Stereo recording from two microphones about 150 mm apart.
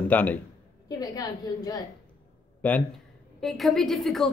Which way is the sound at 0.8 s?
25° left (ahead or behind).